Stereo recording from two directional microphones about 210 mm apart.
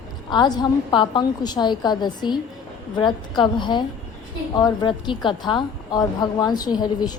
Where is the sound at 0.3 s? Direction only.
20° left (ahead or behind).